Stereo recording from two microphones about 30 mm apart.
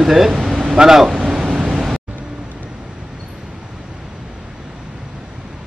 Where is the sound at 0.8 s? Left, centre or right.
Centre.